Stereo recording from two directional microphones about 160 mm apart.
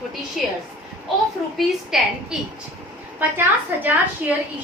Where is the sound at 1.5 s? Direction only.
5° right (ahead or behind).